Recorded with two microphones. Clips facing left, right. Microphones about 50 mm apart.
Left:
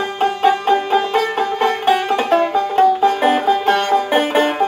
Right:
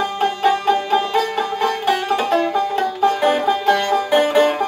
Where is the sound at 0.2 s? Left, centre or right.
Left.